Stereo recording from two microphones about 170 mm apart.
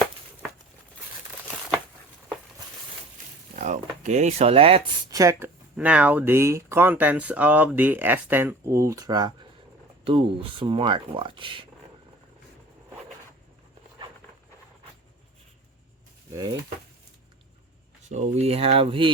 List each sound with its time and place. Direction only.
3.5 s speech: 45° right (ahead or behind)
5.1 s speech: 20° right (ahead or behind)
18.1 s speech: 40° right (ahead or behind)